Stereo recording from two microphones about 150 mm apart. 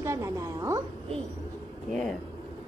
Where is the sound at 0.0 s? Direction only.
20° right (ahead or behind).